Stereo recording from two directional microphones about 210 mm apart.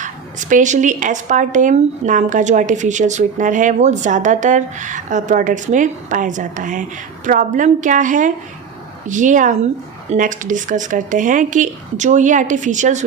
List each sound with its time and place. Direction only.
0.0 s speech: 35° right (ahead or behind)